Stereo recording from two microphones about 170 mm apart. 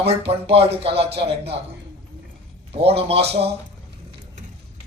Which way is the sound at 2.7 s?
35° right (ahead or behind).